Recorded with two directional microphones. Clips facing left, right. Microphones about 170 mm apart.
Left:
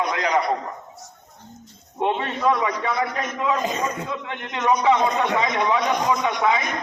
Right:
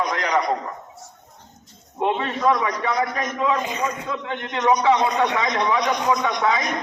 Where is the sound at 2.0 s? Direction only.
10° left (ahead or behind).